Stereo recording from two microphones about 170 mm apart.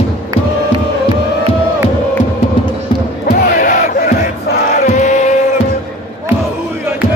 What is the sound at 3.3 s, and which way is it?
Battle cry, 55° left (ahead or behind).